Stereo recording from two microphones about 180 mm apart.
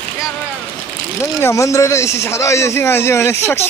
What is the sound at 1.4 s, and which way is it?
Speech, 15° left (ahead or behind).